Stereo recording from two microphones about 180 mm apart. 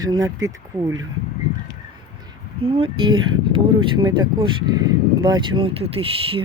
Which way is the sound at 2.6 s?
30° right (ahead or behind).